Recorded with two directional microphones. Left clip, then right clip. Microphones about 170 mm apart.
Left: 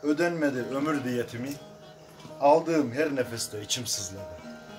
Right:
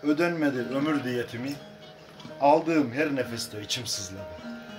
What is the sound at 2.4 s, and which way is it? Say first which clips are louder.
Music: even; centre (ahead or behind).